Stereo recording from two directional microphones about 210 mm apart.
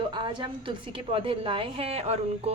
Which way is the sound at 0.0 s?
20° right (ahead or behind).